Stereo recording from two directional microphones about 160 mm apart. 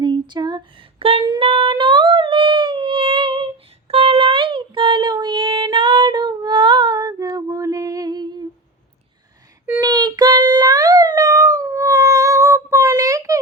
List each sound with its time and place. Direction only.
0.0 s a sound: 30° right (ahead or behind)
1.7 s humming: 30° right (ahead or behind)
3.8 s child singing: 35° right (ahead or behind)
9.8 s child singing: 25° right (ahead or behind)